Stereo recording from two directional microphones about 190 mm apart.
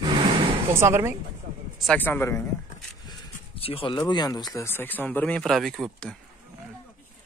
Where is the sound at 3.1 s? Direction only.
30° left (ahead or behind).